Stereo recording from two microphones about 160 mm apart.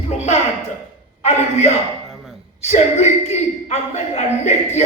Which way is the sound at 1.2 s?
45° left (ahead or behind).